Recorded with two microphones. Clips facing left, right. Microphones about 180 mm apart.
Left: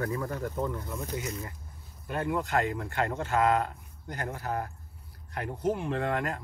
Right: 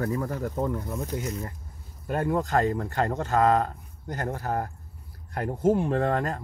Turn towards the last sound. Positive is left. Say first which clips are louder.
# right 5 dB
turn(degrees=-40)  # may be behind; listen again after turning